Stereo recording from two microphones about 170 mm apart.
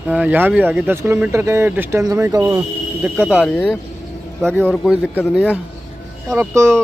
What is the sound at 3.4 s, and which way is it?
A man's voice, 10° left (ahead or behind).